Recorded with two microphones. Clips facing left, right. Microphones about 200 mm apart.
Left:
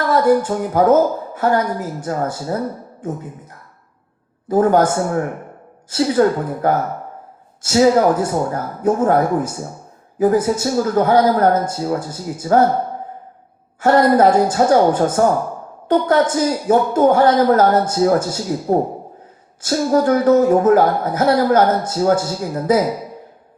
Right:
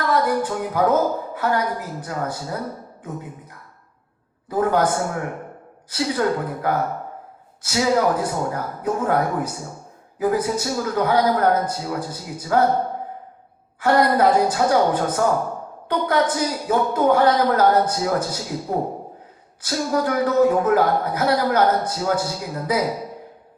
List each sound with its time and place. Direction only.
0.1 s speech: 45° left (ahead or behind)
4.4 s speech: 45° left (ahead or behind)
5.9 s speech: 45° left (ahead or behind)
13.8 s speech: 45° left (ahead or behind)